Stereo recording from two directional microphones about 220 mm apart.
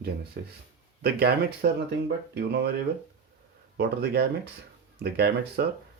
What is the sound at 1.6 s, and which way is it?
Speech, 40° right (ahead or behind).